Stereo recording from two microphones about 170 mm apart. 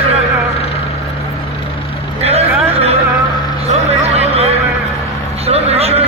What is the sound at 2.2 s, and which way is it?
Vehicle, 35° right (ahead or behind).